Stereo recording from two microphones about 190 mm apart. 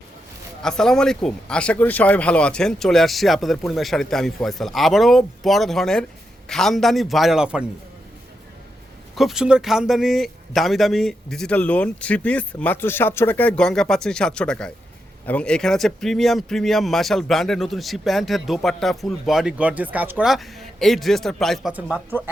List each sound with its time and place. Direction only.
0.6 s speech: 5° left (ahead or behind)
9.1 s speech: centre (ahead or behind)